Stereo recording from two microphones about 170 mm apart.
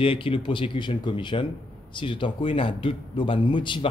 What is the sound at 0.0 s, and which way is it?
A man's voice, 30° left (ahead or behind).